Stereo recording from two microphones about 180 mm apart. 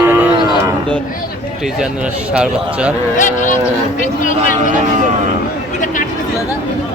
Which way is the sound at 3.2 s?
45° left (ahead or behind).